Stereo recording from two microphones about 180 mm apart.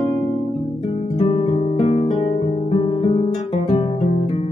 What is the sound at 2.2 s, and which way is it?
Guitar, 30° left (ahead or behind).